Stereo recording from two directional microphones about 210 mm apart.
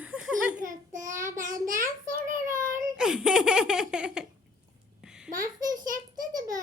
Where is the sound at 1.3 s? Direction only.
40° right (ahead or behind).